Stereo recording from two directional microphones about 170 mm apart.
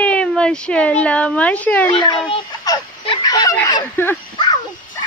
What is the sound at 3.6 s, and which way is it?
Speech, 20° left (ahead or behind).